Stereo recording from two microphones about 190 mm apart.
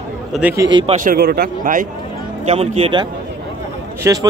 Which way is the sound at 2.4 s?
35° right (ahead or behind).